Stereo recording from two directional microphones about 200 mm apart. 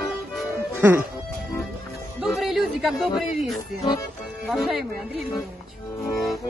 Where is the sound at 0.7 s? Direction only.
10° right (ahead or behind).